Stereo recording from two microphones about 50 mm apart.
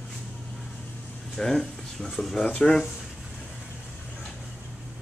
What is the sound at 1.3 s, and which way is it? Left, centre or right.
Speech, centre.